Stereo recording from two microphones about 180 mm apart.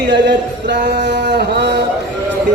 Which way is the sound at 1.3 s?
65° right (ahead or behind).